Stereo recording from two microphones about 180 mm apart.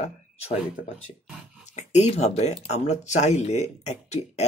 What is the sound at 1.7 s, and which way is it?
Speech, 40° left (ahead or behind).